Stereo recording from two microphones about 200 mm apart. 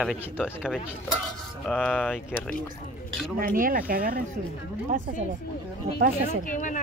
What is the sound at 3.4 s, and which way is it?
Speech, 45° right (ahead or behind).